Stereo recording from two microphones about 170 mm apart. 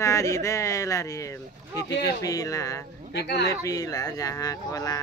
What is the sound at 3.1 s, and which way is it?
Speech, 75° left (ahead or behind).